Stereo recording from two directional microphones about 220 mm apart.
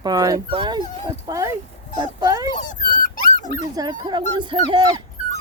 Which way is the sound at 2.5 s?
35° left (ahead or behind).